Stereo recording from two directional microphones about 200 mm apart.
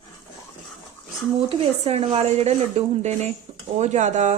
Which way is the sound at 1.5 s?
30° right (ahead or behind).